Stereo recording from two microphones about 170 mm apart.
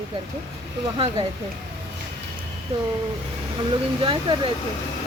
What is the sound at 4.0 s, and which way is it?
Speech, 30° right (ahead or behind).